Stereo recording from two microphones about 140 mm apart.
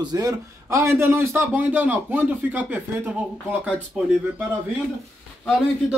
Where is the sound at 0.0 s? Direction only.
25° right (ahead or behind).